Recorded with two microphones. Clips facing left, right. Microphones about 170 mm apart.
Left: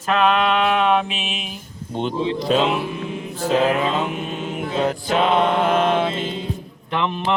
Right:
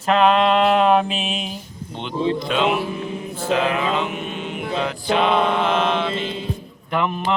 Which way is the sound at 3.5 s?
40° left (ahead or behind).